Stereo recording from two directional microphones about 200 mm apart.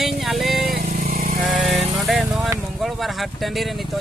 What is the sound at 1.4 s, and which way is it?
Speech, centre (ahead or behind).